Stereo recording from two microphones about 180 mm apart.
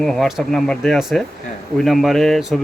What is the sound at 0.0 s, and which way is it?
Speech, centre (ahead or behind).